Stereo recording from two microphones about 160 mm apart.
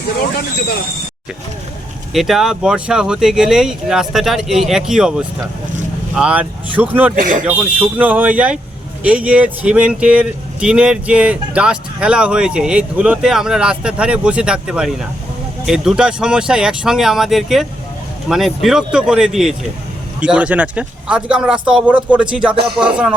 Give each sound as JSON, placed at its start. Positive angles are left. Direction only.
{"t": 2.1, "sound": "speech", "side_deg": 0}
{"t": 7.2, "sound": "speech", "side_deg": -55}
{"t": 7.4, "sound": "speech", "side_deg": -10}